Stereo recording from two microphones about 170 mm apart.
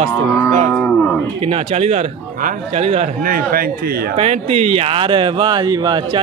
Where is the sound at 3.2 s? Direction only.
55° right (ahead or behind).